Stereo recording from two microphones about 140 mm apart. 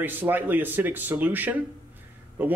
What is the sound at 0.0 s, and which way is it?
Speech, 15° right (ahead or behind).